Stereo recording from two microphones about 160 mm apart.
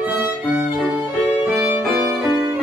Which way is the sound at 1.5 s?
5° right (ahead or behind).